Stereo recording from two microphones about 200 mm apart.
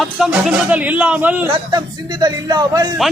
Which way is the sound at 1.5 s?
20° right (ahead or behind).